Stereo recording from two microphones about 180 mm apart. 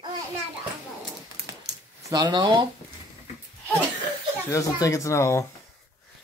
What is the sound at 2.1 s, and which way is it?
Speech, 25° right (ahead or behind).